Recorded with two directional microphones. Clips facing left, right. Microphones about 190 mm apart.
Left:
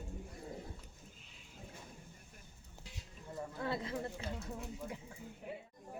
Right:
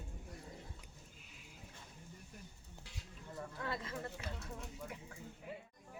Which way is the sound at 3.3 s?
30° left (ahead or behind).